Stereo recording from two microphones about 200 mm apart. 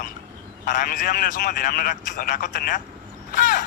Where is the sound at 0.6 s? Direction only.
45° left (ahead or behind).